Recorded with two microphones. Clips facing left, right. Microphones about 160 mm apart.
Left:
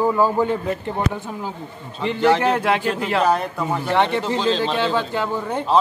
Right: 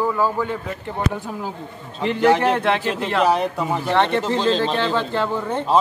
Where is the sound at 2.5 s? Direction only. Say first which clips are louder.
Even; 10° left (ahead or behind).